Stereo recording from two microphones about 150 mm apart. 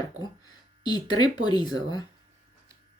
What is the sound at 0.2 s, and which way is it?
Speech, 30° left (ahead or behind).